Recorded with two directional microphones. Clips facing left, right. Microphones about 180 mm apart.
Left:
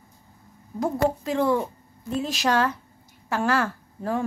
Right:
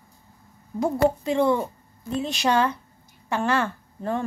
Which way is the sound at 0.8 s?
Centre (ahead or behind).